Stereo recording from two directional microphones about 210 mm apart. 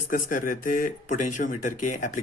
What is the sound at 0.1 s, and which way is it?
A man's voice, 40° left (ahead or behind).